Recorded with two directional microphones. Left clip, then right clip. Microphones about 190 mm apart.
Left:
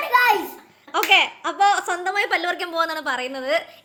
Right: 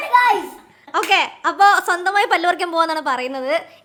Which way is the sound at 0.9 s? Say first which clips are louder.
Even; 15° right (ahead or behind).